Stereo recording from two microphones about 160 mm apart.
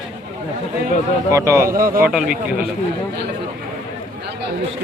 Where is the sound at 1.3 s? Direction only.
20° right (ahead or behind).